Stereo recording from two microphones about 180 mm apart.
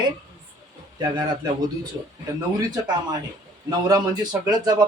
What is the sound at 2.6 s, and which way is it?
Speech, 25° right (ahead or behind).